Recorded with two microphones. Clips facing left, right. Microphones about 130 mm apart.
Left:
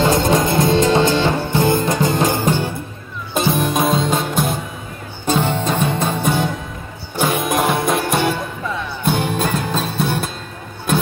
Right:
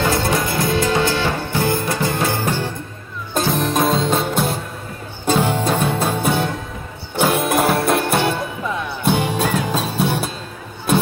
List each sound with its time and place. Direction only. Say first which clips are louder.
0.0 s music: left 4 dB; 20° left (ahead or behind)
3.3 s music: left 1 dB; centre (ahead or behind)